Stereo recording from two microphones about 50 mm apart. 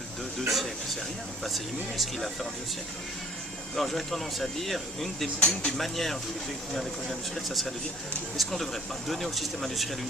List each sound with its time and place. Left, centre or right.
0.4 s speech: centre
3.8 s speech: centre
5.4 s speech: centre
5.7 s speech: centre